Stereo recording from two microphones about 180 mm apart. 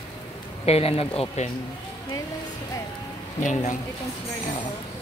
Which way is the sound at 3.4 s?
45° left (ahead or behind).